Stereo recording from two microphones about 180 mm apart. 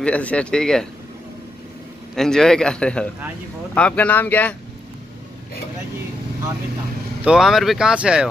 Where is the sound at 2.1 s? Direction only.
5° left (ahead or behind).